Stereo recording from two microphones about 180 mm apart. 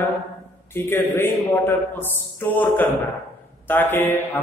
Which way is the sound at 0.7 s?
10° left (ahead or behind).